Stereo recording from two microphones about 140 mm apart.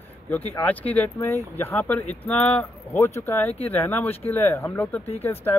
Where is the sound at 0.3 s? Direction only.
10° left (ahead or behind).